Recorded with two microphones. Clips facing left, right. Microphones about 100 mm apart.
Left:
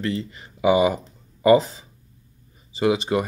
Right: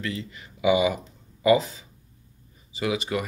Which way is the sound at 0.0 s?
35° left (ahead or behind).